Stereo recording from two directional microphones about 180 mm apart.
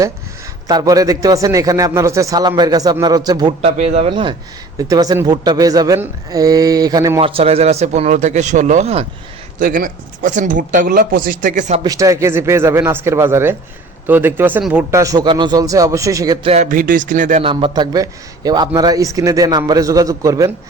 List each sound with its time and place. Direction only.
0.7 s a man's voice: 20° right (ahead or behind)
3.6 s a man's voice: 35° right (ahead or behind); by 7.2 s 20° right (ahead or behind)
7.2 s speech: 30° right (ahead or behind)
9.6 s speech: 50° right (ahead or behind)
11.8 s a man's voice: 20° right (ahead or behind)
16.5 s speech: 40° right (ahead or behind)
17.4 s a man's voice: 30° right (ahead or behind)